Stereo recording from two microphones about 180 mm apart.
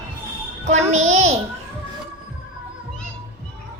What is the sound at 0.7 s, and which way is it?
Speech, 40° right (ahead or behind).